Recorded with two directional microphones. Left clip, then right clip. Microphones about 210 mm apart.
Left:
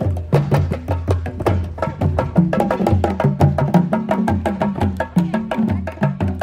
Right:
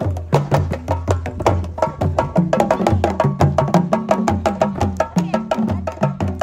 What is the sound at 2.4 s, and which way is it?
Music, 25° right (ahead or behind).